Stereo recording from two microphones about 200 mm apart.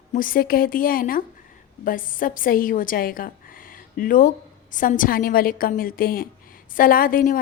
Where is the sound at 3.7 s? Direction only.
45° left (ahead or behind).